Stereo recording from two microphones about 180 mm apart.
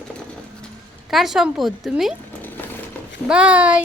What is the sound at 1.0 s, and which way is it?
Speech, centre (ahead or behind).